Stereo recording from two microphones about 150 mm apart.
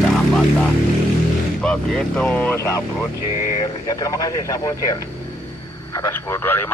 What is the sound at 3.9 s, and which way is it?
Speech, 20° left (ahead or behind).